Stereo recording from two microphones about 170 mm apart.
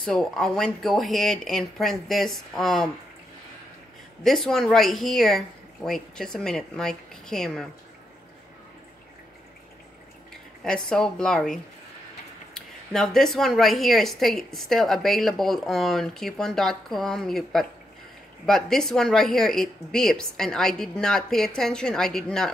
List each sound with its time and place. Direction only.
0.0 s a woman's voice: 5° left (ahead or behind)
4.2 s a woman's voice: centre (ahead or behind)
10.6 s a woman's voice: 5° left (ahead or behind)